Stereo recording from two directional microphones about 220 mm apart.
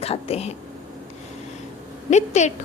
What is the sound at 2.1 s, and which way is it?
Speech, 30° left (ahead or behind).